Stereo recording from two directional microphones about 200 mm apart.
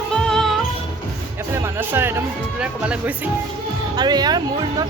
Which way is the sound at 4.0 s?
20° right (ahead or behind).